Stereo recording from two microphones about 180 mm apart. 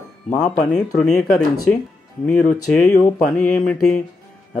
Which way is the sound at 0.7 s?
5° left (ahead or behind).